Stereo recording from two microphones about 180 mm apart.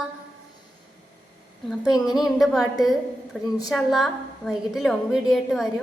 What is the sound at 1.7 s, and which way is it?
A woman's voice, 5° left (ahead or behind).